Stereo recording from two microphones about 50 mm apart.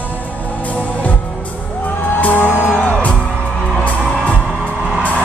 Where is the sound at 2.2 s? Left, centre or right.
Left.